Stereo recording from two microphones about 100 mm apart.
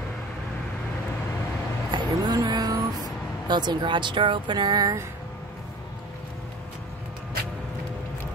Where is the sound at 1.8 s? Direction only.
45° right (ahead or behind).